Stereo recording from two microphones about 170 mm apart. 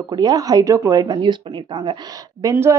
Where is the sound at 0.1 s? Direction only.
20° right (ahead or behind).